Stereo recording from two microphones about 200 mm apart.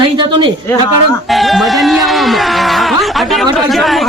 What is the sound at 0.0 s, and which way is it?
Speech, 25° right (ahead or behind).